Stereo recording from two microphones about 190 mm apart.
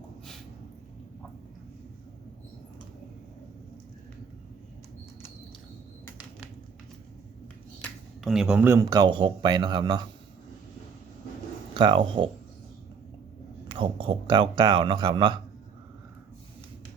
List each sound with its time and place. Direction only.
7.8 s speech: centre (ahead or behind); by 10.1 s 25° right (ahead or behind)
11.7 s speech: 25° right (ahead or behind)
13.7 s speech: 30° right (ahead or behind)